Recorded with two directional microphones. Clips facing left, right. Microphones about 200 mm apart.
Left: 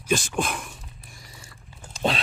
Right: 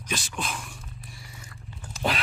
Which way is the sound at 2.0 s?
25° left (ahead or behind).